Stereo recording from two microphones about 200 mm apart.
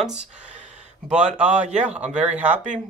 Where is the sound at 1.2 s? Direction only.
5° right (ahead or behind).